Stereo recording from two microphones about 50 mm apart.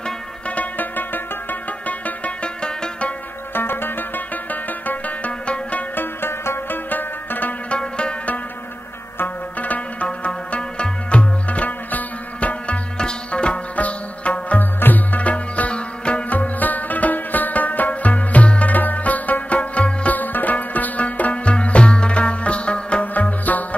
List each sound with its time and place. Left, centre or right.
0.5 s music: left
3.5 s music: left
5.9 s music: left
6.9 s zither: left
7.7 s music: left
9.2 s zither: left
14.6 s sitar: left
20.2 s music: left
23.1 s music: left